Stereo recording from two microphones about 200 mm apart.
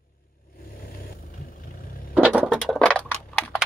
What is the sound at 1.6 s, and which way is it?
Vehicle, 45° left (ahead or behind).